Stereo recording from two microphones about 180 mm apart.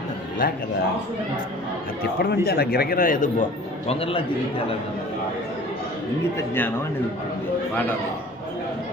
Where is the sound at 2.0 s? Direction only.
60° left (ahead or behind).